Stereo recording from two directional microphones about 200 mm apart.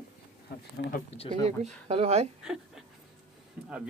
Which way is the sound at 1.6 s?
30° right (ahead or behind).